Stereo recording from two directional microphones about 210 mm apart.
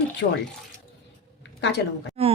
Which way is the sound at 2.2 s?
30° right (ahead or behind).